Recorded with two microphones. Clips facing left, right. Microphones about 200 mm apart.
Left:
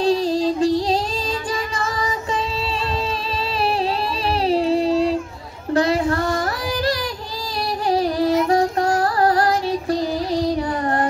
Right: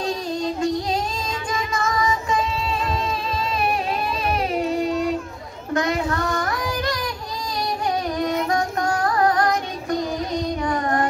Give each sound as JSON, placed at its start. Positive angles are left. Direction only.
{"t": 0.0, "sound": "music", "side_deg": 30}
{"t": 4.3, "sound": "a sound", "side_deg": 30}
{"t": 5.7, "sound": "child singing", "side_deg": 30}
{"t": 7.9, "sound": "music", "side_deg": 30}
{"t": 10.7, "sound": "child singing", "side_deg": 30}